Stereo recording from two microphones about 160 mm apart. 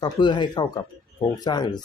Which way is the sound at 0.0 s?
30° left (ahead or behind).